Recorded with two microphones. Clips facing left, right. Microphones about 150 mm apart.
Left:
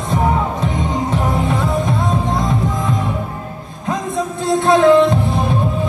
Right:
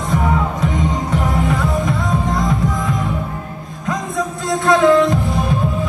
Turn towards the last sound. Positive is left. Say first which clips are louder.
# left 2 dB
turn(degrees=25)  # may be behind; listen again after turning